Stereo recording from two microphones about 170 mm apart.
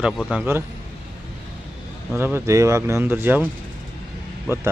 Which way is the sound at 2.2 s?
15° right (ahead or behind).